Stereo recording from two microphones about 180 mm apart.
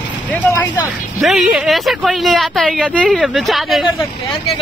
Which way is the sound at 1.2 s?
Centre (ahead or behind).